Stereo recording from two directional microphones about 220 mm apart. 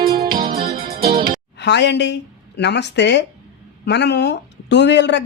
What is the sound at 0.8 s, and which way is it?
Music, 45° right (ahead or behind).